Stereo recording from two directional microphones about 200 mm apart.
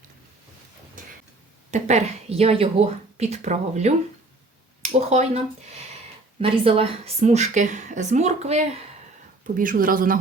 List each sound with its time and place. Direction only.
1.7 s speech: 35° right (ahead or behind)
6.4 s speech: 30° right (ahead or behind); by 10.2 s 45° right (ahead or behind)